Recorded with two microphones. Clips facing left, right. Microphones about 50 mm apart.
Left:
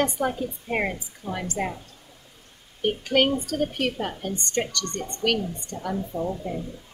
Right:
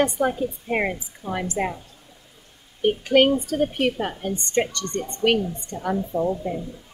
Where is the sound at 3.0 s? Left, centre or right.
Centre.